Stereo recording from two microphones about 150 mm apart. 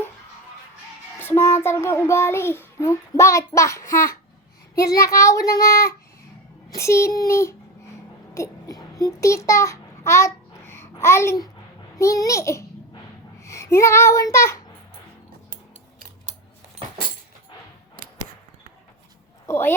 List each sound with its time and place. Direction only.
1.2 s a child's voice: 15° left (ahead or behind)
4.7 s child singing: 20° left (ahead or behind)
8.3 s a sound: 20° left (ahead or behind)
11.9 s child singing: 20° left (ahead or behind)
19.5 s speech: 15° left (ahead or behind)